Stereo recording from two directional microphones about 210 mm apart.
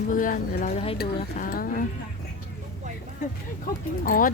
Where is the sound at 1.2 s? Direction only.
40° left (ahead or behind).